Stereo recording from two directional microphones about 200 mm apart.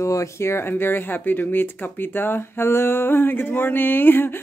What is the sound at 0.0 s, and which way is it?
Speech, 15° left (ahead or behind).